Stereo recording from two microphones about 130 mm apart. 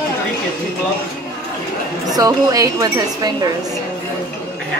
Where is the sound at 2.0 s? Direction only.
30° right (ahead or behind).